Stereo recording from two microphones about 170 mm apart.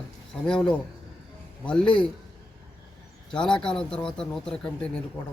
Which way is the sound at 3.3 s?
5° left (ahead or behind).